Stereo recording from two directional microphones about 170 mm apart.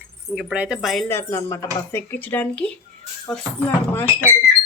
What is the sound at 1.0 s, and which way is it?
Speech, 15° left (ahead or behind).